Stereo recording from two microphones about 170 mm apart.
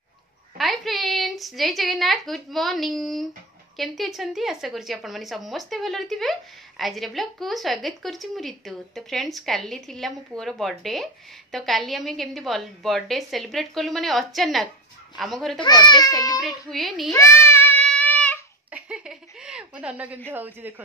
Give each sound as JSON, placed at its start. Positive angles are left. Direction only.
{"t": 0.6, "sound": "a woman's voice", "side_deg": 0}
{"t": 15.6, "sound": "a child's voice", "side_deg": 25}
{"t": 16.3, "sound": "a woman's voice", "side_deg": 0}
{"t": 17.1, "sound": "child singing", "side_deg": 15}
{"t": 18.7, "sound": "a sound", "side_deg": -5}
{"t": 20.2, "sound": "a man's voice", "side_deg": -10}